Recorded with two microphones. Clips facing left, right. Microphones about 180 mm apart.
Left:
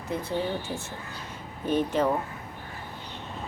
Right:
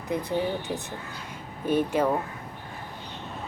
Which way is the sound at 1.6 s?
10° right (ahead or behind).